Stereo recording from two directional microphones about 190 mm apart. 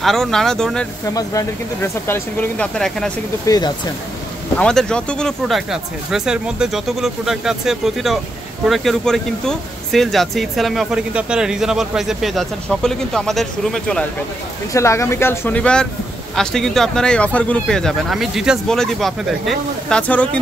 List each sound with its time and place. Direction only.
0.0 s speech: centre (ahead or behind)
1.0 s speech: 15° left (ahead or behind)
3.4 s speech: 20° left (ahead or behind)
4.6 s speech: 5° left (ahead or behind)
14.7 s speech: 15° left (ahead or behind)